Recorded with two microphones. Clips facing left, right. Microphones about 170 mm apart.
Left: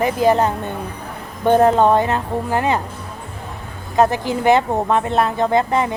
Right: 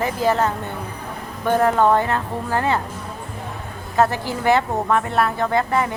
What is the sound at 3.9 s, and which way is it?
Speech, 20° left (ahead or behind).